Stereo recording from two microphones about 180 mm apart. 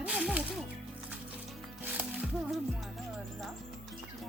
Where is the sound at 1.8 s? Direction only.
10° right (ahead or behind).